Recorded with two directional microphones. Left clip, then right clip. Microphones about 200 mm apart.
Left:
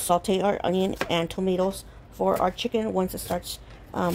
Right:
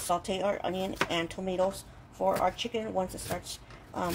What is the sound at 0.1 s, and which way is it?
Speech, 50° left (ahead or behind).